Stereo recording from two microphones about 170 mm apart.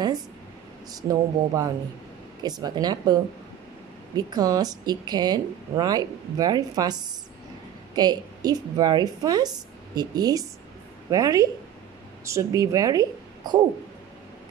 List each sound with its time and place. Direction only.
0.9 s a woman's voice: 20° right (ahead or behind)